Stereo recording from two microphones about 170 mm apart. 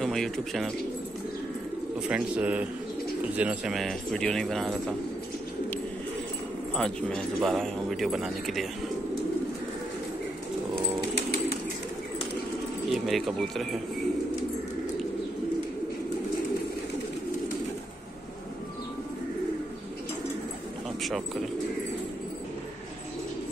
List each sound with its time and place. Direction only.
0.0 s speech: centre (ahead or behind)
2.0 s speech: 5° right (ahead or behind)
6.7 s speech: 5° left (ahead or behind)
11.1 s bird: 70° left (ahead or behind)
12.9 s speech: centre (ahead or behind)